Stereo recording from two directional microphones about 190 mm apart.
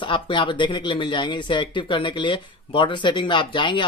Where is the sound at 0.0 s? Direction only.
25° left (ahead or behind).